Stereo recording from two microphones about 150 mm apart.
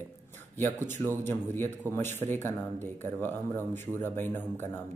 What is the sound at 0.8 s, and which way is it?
Speech, 15° left (ahead or behind).